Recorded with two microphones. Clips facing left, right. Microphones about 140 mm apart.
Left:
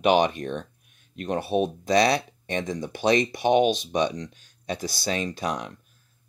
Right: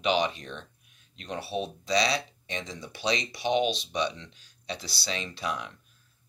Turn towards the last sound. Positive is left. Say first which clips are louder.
# left 5 dB
turn(degrees=40)  # may be behind; listen again after turning